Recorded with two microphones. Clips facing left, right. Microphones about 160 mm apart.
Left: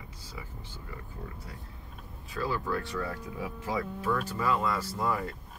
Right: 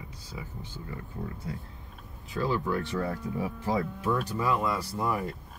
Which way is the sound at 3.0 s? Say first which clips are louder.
Right 4 dB; 35° right (ahead or behind).